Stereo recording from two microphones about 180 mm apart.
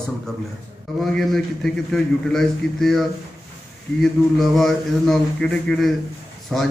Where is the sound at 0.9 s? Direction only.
Centre (ahead or behind).